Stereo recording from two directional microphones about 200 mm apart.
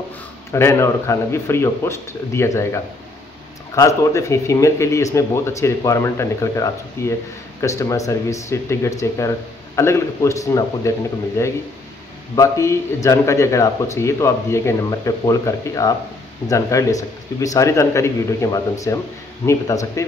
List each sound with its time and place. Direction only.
0.5 s speech: 10° left (ahead or behind)